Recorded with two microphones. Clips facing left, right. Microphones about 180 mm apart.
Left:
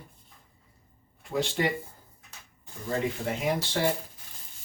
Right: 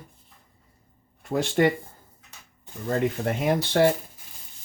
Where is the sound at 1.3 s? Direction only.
55° right (ahead or behind).